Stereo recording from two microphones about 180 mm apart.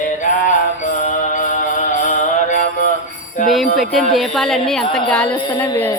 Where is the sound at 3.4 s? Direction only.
Centre (ahead or behind).